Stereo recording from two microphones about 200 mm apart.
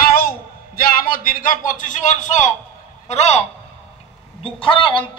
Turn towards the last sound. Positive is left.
turn(degrees=25)  # may be behind; listen again after turning